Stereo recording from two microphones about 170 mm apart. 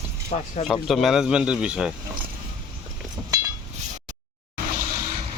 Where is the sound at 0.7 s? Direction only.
Centre (ahead or behind).